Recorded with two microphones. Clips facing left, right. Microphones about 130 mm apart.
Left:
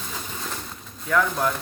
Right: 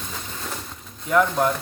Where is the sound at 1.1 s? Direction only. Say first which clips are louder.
Right 3 dB; 20° right (ahead or behind).